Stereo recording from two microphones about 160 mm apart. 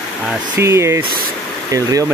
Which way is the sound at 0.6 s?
15° right (ahead or behind).